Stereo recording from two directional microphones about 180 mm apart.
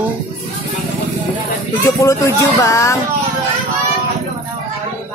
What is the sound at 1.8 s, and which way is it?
Speech, 20° left (ahead or behind).